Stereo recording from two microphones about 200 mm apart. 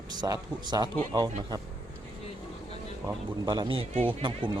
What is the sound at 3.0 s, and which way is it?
Speech, 20° right (ahead or behind).